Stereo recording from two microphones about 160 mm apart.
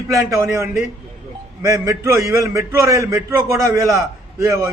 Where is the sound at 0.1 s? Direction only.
20° right (ahead or behind).